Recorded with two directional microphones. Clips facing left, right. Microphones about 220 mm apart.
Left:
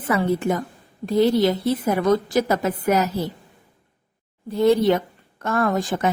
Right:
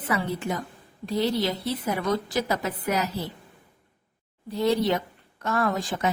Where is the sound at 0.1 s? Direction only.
50° left (ahead or behind).